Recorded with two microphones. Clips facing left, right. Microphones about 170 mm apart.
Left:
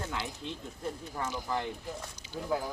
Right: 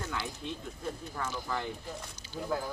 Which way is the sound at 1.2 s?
15° left (ahead or behind).